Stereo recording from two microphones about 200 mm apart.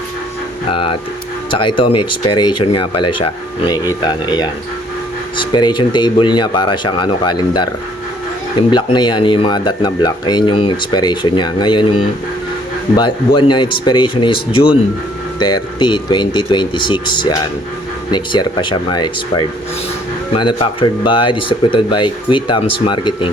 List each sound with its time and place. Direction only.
0.7 s speech: 25° left (ahead or behind)
8.7 s speech: 20° left (ahead or behind)
20.3 s speech: 25° left (ahead or behind)